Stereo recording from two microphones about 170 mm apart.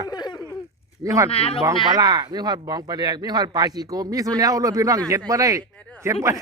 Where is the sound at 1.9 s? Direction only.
25° right (ahead or behind).